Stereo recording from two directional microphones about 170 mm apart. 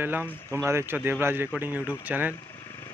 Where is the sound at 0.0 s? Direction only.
10° right (ahead or behind).